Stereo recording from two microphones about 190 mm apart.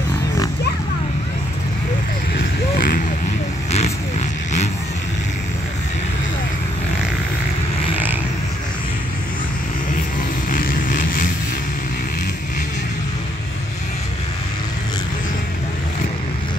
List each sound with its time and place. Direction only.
2.3 s vehicle: 50° left (ahead or behind)
10.5 s vehicle: 45° left (ahead or behind)